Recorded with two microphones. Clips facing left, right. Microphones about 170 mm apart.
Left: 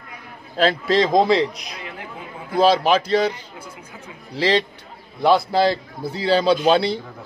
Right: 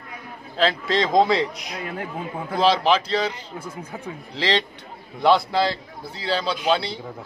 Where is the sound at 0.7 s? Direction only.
40° left (ahead or behind).